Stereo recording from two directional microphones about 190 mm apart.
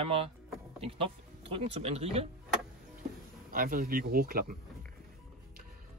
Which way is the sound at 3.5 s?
50° right (ahead or behind).